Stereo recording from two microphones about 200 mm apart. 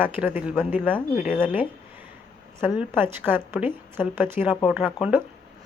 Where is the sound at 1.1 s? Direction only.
45° left (ahead or behind).